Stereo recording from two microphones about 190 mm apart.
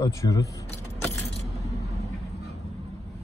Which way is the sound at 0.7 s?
15° left (ahead or behind).